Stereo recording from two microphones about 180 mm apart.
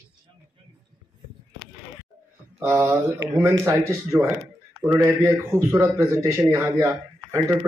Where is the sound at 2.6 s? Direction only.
15° right (ahead or behind).